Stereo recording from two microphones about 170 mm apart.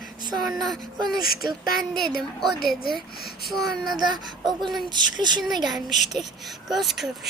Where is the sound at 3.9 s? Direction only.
25° right (ahead or behind).